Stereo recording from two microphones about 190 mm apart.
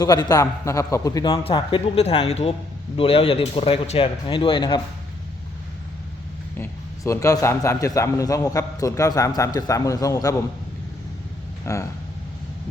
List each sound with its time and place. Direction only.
0.0 s a man's voice: 20° left (ahead or behind)
6.6 s a man's voice: 15° left (ahead or behind)
11.6 s speech: 15° left (ahead or behind)